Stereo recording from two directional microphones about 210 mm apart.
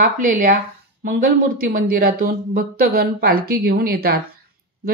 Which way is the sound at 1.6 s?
45° right (ahead or behind).